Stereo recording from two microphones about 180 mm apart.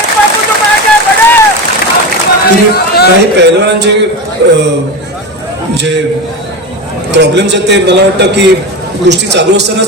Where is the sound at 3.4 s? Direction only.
70° right (ahead or behind).